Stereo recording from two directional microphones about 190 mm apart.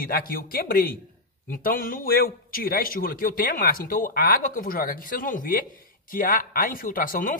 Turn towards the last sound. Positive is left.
turn(degrees=45)  # may be behind; listen again after turning